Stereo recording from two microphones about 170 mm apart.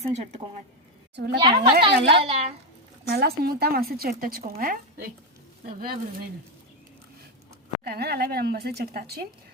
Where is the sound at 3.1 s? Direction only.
65° right (ahead or behind).